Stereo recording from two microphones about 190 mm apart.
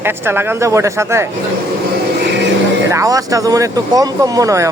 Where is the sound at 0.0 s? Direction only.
10° right (ahead or behind).